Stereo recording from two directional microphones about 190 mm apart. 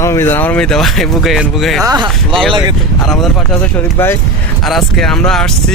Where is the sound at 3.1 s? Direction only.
Centre (ahead or behind).